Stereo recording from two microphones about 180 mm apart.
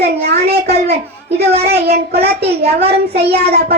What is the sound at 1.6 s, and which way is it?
Child singing, 60° right (ahead or behind).